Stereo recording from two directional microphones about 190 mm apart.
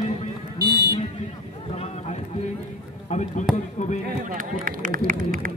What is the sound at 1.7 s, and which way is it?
Speech, 35° left (ahead or behind).